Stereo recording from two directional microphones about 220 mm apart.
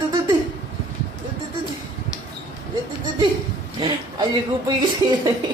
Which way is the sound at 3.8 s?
20° right (ahead or behind).